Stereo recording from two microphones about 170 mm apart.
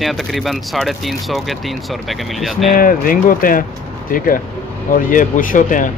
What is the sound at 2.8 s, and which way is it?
Speech, 55° left (ahead or behind).